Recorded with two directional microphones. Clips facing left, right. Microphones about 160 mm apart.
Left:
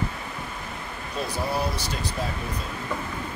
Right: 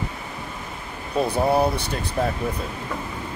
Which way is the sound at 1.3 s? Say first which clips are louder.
Right 7 dB; 60° right (ahead or behind).